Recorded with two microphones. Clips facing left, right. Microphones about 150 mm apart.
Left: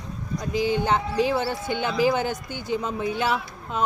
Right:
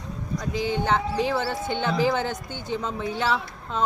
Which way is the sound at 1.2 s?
20° left (ahead or behind).